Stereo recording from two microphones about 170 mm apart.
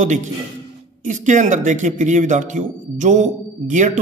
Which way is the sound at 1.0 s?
45° right (ahead or behind).